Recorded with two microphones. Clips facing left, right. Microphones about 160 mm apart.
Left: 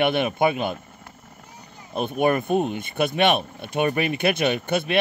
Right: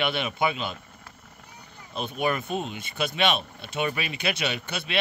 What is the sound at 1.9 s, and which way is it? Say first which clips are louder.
Speech: left 6 dB; 50° left (ahead or behind).